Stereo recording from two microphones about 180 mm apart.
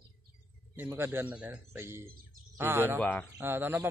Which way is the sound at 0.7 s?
10° right (ahead or behind).